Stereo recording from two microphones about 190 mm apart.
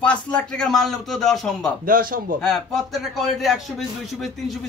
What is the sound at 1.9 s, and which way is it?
Speech, 50° right (ahead or behind).